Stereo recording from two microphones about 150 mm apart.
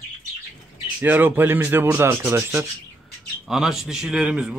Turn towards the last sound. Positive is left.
turn(degrees=-10)  # may be behind; listen again after turning